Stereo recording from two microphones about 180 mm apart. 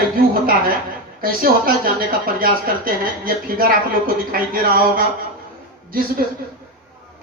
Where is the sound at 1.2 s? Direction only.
55° right (ahead or behind).